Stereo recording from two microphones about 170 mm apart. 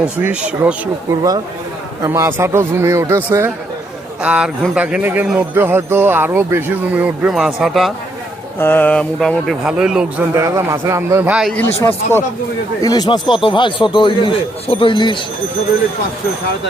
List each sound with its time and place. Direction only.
0.0 s a man's voice: 5° right (ahead or behind)
2.0 s a man's voice: 15° right (ahead or behind); by 7.9 s centre (ahead or behind)
8.5 s a man's voice: 10° left (ahead or behind); by 10.2 s 5° right (ahead or behind)
10.3 s a man's voice: 20° right (ahead or behind)
11.5 s a man's voice: 10° left (ahead or behind); by 15.2 s 30° left (ahead or behind)